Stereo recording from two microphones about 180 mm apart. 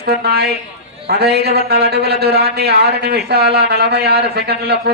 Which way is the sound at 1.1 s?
60° right (ahead or behind).